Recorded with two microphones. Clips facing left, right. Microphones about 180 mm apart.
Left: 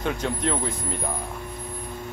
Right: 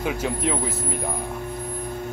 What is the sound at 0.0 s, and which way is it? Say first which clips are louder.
Speech: right 1 dB; 5° right (ahead or behind).